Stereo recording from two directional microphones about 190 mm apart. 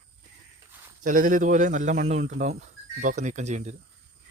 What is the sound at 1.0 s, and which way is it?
Speech, 45° right (ahead or behind).